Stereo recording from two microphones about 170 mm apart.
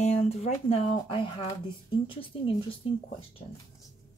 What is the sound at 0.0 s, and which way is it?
Speech, 40° left (ahead or behind).